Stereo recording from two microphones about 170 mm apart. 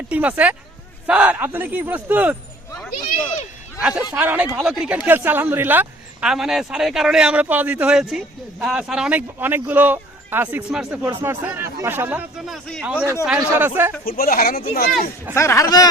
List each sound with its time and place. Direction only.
0.1 s speech: 10° right (ahead or behind)
3.8 s a man's voice: 10° right (ahead or behind)
14.0 s speech: 60° left (ahead or behind)
15.4 s speech: 15° left (ahead or behind)